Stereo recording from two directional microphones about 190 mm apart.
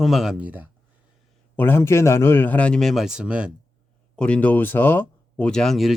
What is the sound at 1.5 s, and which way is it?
A man's voice, 10° left (ahead or behind).